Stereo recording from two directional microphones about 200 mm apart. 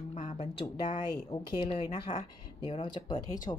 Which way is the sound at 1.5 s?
20° left (ahead or behind).